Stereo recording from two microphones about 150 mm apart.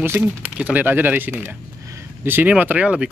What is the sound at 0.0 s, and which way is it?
Speech, 10° right (ahead or behind).